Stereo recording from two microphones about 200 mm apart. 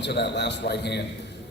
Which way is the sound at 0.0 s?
55° left (ahead or behind).